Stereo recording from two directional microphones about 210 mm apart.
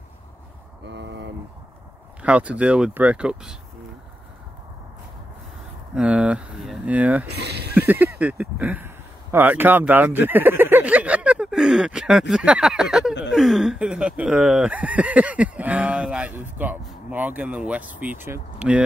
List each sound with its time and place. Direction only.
0.8 s vehicle: 55° right (ahead or behind)
2.2 s speech: 5° right (ahead or behind)
5.9 s speech: 5° right (ahead or behind)
7.2 s speech: 50° right (ahead or behind)
7.7 s speech: 10° right (ahead or behind)